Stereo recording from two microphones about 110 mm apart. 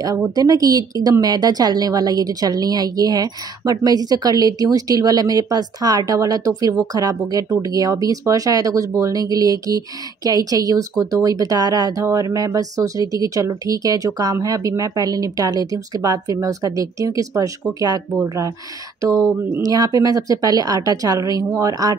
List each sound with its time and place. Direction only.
0.0 s a woman's voice: 30° right (ahead or behind)